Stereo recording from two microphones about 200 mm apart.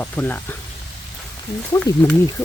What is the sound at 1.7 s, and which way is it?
Speech, 10° left (ahead or behind).